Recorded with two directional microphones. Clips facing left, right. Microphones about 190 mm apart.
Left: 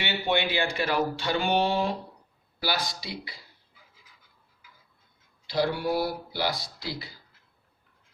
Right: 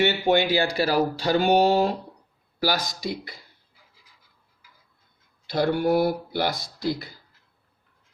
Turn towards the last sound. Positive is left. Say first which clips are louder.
# right 9 dB
turn(degrees=-50)  # may be behind; listen again after turning